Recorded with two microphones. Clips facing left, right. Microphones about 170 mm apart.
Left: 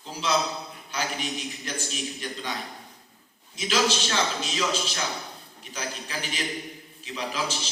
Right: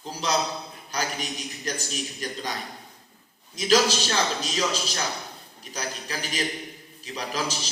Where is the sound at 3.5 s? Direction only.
40° right (ahead or behind).